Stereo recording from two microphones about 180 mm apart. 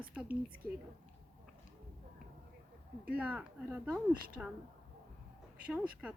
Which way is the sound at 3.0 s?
10° right (ahead or behind).